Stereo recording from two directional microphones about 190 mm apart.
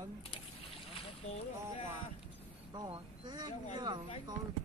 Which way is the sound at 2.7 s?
25° right (ahead or behind).